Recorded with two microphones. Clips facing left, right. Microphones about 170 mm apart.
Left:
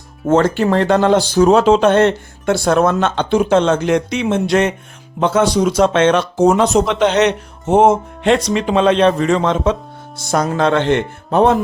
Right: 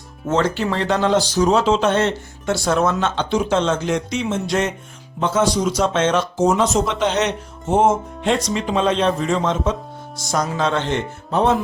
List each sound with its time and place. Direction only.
0.3 s speech: 50° left (ahead or behind); by 9.7 s 70° left (ahead or behind)
10.2 s speech: 55° left (ahead or behind)